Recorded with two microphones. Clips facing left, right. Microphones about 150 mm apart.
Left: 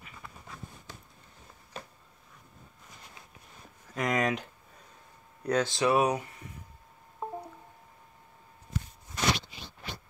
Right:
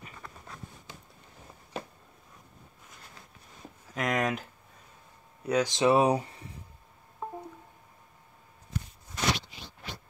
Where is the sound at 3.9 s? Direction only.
Centre (ahead or behind).